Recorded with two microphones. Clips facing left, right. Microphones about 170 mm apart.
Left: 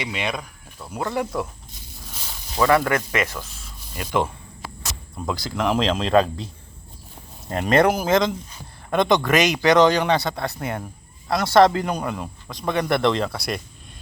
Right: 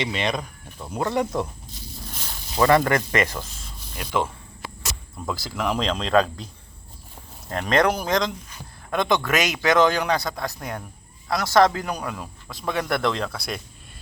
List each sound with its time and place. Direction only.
0.0 s speech: 5° left (ahead or behind)
0.8 s speech: 15° right (ahead or behind)
2.6 s speech: centre (ahead or behind)
5.3 s a man's voice: 5° right (ahead or behind)
7.5 s a man's voice: 5° left (ahead or behind)